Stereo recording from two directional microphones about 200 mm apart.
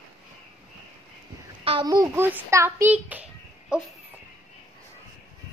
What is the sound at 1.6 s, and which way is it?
A child's voice, 25° right (ahead or behind).